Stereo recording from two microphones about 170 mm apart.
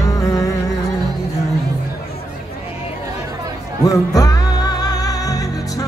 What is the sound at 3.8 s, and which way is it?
Music, 20° left (ahead or behind).